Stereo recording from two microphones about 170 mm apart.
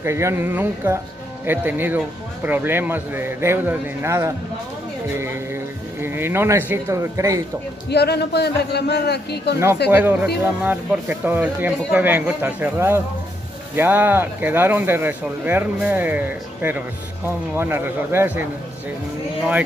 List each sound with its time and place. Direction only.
0.0 s speech: 15° right (ahead or behind)
7.9 s a man's voice: 75° left (ahead or behind)
9.8 s speech: 10° right (ahead or behind)